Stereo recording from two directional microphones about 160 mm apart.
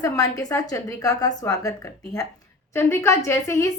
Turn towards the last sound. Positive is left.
turn(degrees=20)  # may be behind; listen again after turning